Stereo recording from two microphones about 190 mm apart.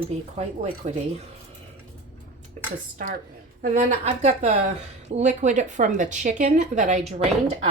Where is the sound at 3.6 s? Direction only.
35° right (ahead or behind).